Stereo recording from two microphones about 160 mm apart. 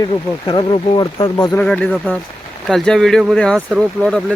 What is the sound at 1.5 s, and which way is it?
Speech, 10° left (ahead or behind).